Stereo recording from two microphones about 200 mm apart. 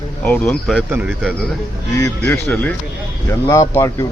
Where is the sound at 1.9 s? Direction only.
15° left (ahead or behind).